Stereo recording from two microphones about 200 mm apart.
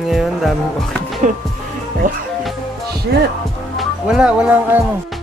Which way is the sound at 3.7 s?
Centre (ahead or behind).